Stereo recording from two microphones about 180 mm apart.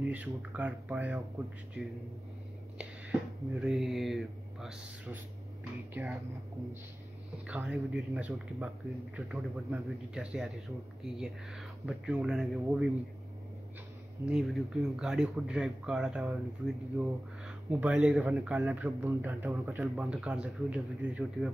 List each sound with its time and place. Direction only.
0.0 s speech: 5° right (ahead or behind)
2.8 s speech: 5° right (ahead or behind)
7.4 s speech: 5° right (ahead or behind)
14.2 s speech: centre (ahead or behind)